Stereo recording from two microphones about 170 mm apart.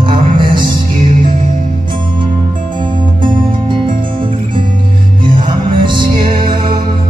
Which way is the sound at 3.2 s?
30° right (ahead or behind).